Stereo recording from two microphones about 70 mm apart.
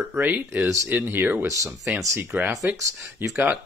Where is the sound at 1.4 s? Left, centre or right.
Right.